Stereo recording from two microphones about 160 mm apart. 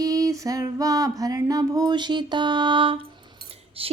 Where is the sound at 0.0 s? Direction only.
20° right (ahead or behind).